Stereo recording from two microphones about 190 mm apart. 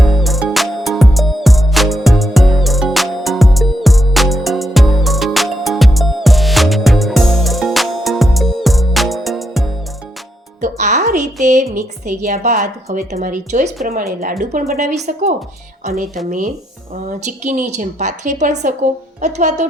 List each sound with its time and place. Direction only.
0.0 s music: centre (ahead or behind)
10.6 s music: 40° right (ahead or behind)
11.4 s a woman's voice: 40° right (ahead or behind)
17.2 s a woman's voice: 40° right (ahead or behind)